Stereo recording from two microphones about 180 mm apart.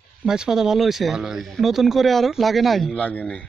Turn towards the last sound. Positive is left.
turn(degrees=5)  # may be behind; listen again after turning